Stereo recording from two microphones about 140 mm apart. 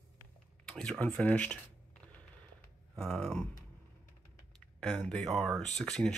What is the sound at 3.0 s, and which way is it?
Speech, centre (ahead or behind).